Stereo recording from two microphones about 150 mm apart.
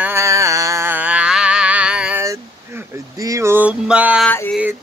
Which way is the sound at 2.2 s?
20° right (ahead or behind).